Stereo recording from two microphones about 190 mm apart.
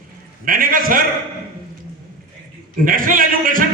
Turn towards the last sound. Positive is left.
turn(degrees=-45)  # may be behind; listen again after turning